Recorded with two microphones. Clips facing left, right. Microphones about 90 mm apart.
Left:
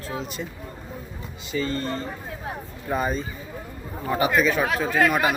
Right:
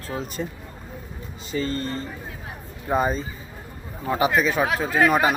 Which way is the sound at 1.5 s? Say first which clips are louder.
Even; 35° right (ahead or behind).